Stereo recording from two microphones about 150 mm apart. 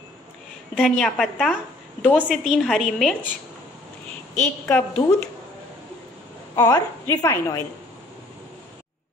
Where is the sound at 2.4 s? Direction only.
Centre (ahead or behind).